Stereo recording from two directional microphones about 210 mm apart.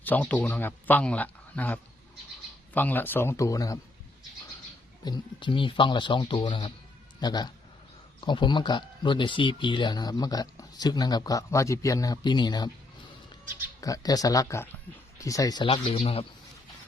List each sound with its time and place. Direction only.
0.0 s speech: 5° left (ahead or behind)
5.0 s speech: 20° left (ahead or behind)
13.8 s speech: 15° left (ahead or behind)